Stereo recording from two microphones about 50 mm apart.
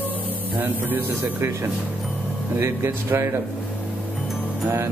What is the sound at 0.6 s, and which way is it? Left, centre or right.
Speech, right.